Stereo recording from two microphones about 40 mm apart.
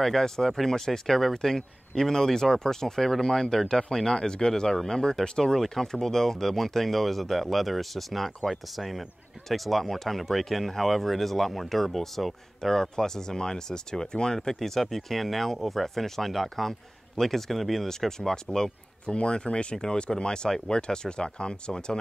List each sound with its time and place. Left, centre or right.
0.0 s speech: centre
19.0 s speech: left